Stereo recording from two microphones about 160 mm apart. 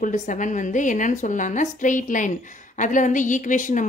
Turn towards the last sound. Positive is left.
turn(degrees=50)  # may be behind; listen again after turning